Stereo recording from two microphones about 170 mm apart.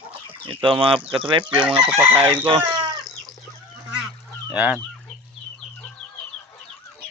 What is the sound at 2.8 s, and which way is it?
Cat, 25° right (ahead or behind).